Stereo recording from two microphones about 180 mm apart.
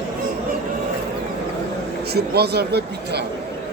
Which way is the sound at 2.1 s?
65° right (ahead or behind).